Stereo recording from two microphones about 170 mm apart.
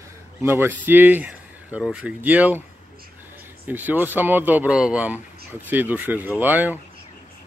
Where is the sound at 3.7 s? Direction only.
10° right (ahead or behind).